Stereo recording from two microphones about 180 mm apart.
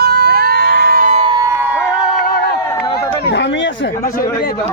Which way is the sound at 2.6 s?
25° left (ahead or behind).